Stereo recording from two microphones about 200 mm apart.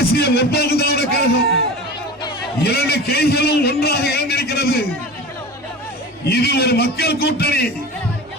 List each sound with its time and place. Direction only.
0.0 s a man's voice: 50° left (ahead or behind)
2.6 s a man's voice: 55° left (ahead or behind)
6.2 s a man's voice: 50° left (ahead or behind)